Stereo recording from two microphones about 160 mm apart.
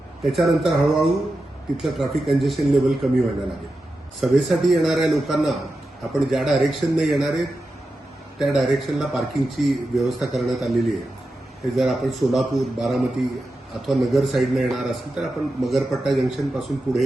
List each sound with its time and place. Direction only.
0.3 s a man's voice: centre (ahead or behind)
4.2 s a man's voice: centre (ahead or behind)